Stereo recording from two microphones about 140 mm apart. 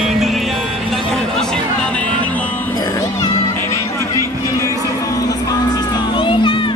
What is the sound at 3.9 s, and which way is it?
Music, 20° left (ahead or behind).